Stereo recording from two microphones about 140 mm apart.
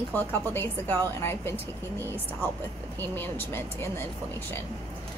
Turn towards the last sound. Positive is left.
turn(degrees=15)  # may be behind; listen again after turning